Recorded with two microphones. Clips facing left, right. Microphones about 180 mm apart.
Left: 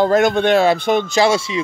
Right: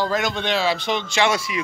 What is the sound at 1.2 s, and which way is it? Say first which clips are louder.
Speech: left 2 dB; 25° left (ahead or behind).